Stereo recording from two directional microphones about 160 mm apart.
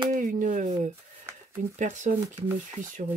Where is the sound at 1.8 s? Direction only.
50° right (ahead or behind).